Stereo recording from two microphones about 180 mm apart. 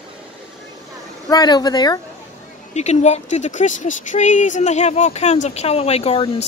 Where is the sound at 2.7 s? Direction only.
40° left (ahead or behind).